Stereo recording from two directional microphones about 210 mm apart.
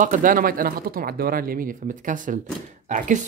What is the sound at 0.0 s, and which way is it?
Speech, 40° right (ahead or behind).